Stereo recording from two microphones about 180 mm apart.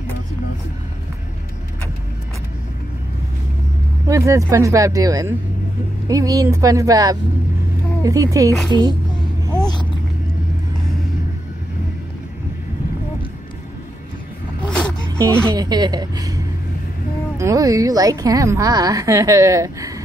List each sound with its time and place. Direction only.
4.1 s a woman's voice: 15° right (ahead or behind)
15.1 s a woman's voice: 15° right (ahead or behind)
17.4 s a woman's voice: 20° right (ahead or behind)